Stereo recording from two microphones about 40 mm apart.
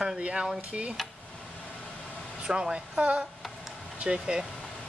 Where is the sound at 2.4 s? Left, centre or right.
Right.